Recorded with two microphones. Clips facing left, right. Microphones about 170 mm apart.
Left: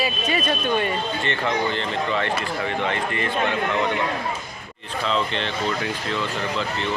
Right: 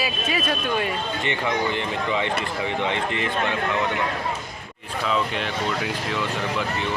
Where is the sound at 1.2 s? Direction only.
15° right (ahead or behind).